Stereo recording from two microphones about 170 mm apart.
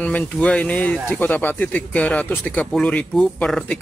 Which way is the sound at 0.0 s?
10° left (ahead or behind).